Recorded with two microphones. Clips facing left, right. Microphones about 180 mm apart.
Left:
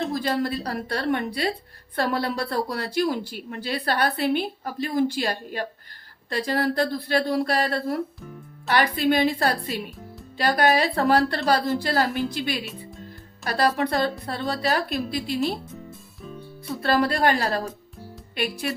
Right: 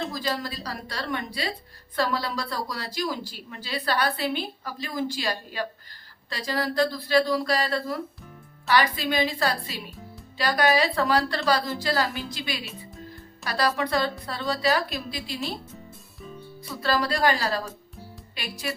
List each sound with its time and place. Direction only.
0.1 s a woman's voice: 60° left (ahead or behind)
16.8 s a woman's voice: 55° left (ahead or behind)